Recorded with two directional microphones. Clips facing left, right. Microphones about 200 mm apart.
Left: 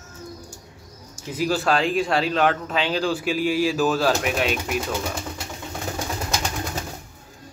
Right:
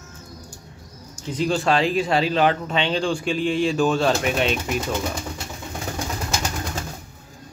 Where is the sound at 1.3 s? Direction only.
5° left (ahead or behind).